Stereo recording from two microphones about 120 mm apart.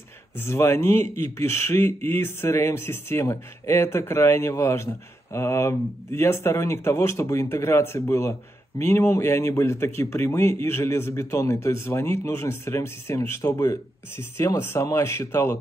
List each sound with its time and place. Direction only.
0.4 s speech: 25° left (ahead or behind)